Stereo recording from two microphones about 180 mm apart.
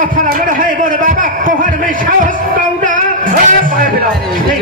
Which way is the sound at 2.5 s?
45° right (ahead or behind).